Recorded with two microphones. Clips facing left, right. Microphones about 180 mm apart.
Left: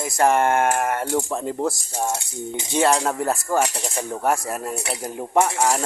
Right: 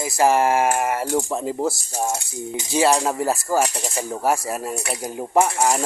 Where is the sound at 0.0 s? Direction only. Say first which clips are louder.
Right 1 dB; 5° right (ahead or behind).